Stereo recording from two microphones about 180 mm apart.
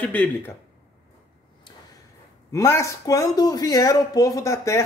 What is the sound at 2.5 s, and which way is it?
Speech, 15° left (ahead or behind).